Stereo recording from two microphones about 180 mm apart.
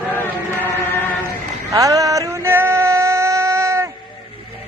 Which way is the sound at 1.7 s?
20° right (ahead or behind).